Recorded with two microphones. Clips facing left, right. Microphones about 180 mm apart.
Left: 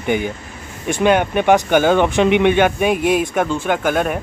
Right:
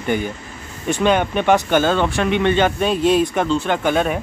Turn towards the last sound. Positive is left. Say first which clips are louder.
# even
turn(degrees=5)  # may be behind; listen again after turning